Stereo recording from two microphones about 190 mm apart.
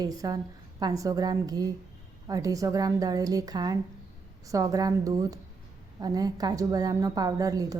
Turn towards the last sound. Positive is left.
turn(degrees=-20)  # may be behind; listen again after turning